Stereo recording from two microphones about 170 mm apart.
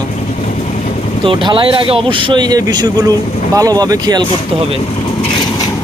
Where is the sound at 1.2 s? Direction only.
30° right (ahead or behind).